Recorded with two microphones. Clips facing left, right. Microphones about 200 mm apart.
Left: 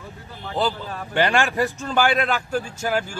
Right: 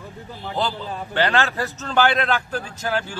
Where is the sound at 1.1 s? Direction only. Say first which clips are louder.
Left 1 dB; 15° left (ahead or behind).